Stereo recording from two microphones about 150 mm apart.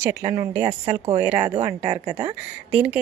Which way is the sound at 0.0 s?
25° right (ahead or behind).